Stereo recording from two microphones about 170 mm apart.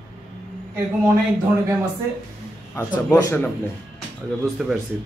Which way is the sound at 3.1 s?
20° left (ahead or behind).